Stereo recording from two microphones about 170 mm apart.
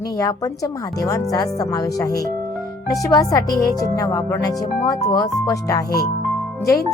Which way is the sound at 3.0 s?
20° left (ahead or behind).